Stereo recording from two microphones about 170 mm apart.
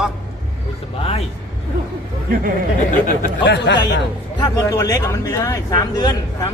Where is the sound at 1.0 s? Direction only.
35° left (ahead or behind).